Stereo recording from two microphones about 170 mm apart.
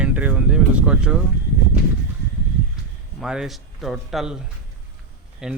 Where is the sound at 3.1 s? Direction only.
5° right (ahead or behind).